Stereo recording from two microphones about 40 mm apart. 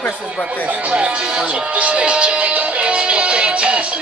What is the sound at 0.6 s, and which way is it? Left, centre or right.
Music, right.